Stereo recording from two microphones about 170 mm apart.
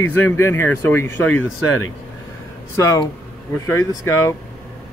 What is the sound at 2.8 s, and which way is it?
Speech, 20° left (ahead or behind).